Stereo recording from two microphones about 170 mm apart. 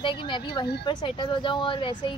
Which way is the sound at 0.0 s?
30° left (ahead or behind).